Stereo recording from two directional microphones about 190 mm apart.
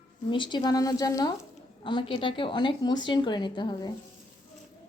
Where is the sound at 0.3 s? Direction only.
25° left (ahead or behind).